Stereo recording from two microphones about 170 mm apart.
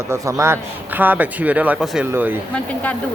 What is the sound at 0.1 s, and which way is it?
Speech, 15° right (ahead or behind).